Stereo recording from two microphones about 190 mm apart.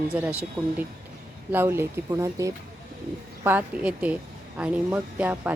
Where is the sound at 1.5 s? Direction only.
10° right (ahead or behind).